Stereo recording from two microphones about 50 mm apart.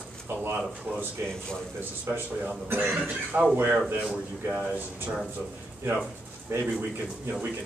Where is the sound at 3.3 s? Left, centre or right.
Centre.